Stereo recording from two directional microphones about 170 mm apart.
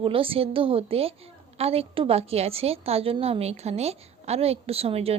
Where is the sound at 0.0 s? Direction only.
30° right (ahead or behind).